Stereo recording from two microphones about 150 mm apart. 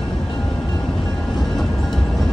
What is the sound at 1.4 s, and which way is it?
Music, centre (ahead or behind).